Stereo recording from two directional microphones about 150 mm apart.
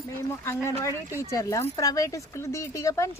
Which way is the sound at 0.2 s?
20° left (ahead or behind).